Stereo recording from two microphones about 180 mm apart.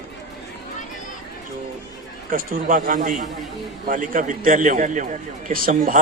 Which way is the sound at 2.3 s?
50° right (ahead or behind).